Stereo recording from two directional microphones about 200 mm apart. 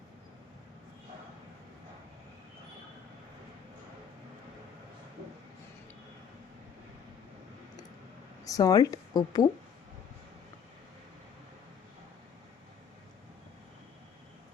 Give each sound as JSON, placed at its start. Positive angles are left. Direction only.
{"t": 8.4, "sound": "speech", "side_deg": 15}